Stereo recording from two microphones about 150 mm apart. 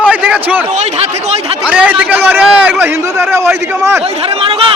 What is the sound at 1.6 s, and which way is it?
A man's voice, 10° right (ahead or behind).